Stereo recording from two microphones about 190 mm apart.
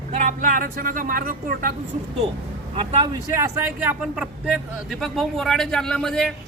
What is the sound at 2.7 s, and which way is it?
A man's voice, 25° right (ahead or behind).